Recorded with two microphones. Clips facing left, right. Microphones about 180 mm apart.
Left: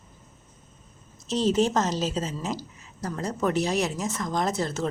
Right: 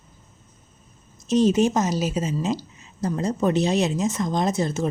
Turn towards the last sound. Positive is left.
turn(degrees=-15)  # may be behind; listen again after turning